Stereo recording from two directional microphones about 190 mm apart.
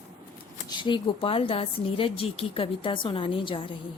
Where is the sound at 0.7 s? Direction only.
25° left (ahead or behind).